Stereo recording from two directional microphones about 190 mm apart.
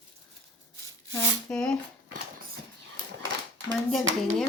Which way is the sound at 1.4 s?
5° left (ahead or behind).